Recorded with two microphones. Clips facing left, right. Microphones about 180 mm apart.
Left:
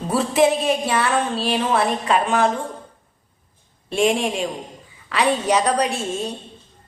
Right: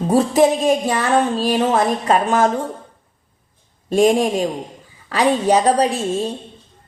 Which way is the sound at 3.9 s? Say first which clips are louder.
Right 5 dB; 40° right (ahead or behind).